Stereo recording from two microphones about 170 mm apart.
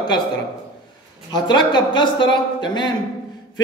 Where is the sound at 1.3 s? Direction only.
25° left (ahead or behind).